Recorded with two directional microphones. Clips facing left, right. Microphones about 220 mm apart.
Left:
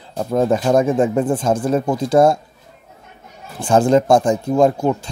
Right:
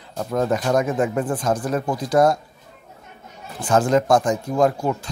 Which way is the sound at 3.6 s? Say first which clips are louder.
Left 4 dB; 30° left (ahead or behind).